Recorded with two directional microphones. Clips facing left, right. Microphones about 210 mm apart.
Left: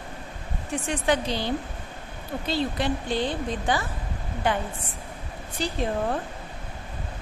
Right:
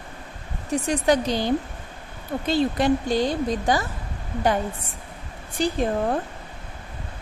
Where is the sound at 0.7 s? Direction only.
40° right (ahead or behind).